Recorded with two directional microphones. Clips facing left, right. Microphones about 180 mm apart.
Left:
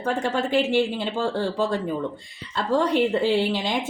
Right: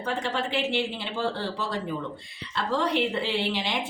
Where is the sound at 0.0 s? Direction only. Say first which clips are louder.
Left 5 dB; 45° left (ahead or behind).